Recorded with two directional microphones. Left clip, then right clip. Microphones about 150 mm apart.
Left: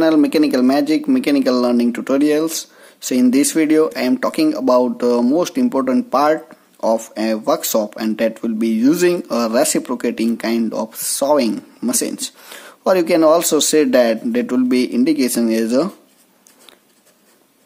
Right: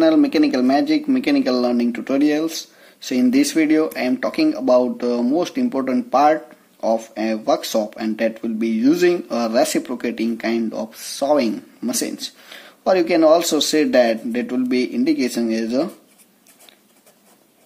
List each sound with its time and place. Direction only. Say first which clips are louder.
0.0 s speech: left 1 dB; 40° left (ahead or behind)